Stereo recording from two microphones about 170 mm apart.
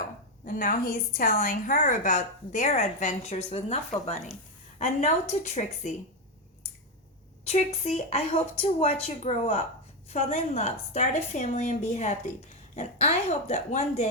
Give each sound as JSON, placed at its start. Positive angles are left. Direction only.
{"t": 0.4, "sound": "a woman's voice", "side_deg": 55}
{"t": 4.8, "sound": "a woman's voice", "side_deg": 45}
{"t": 7.4, "sound": "a woman's voice", "side_deg": 40}